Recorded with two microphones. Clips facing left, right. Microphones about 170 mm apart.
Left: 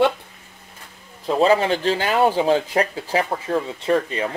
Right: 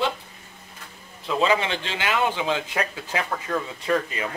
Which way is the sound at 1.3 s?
40° left (ahead or behind).